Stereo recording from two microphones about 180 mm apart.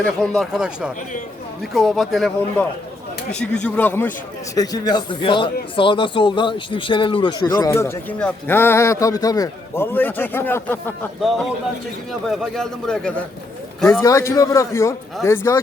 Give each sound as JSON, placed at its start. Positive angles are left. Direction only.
{"t": 0.0, "sound": "a man's voice", "side_deg": 5}
{"t": 4.5, "sound": "speech", "side_deg": 20}
{"t": 7.4, "sound": "a man's voice", "side_deg": 15}
{"t": 11.2, "sound": "speech", "side_deg": 0}
{"t": 13.9, "sound": "a man's voice", "side_deg": 15}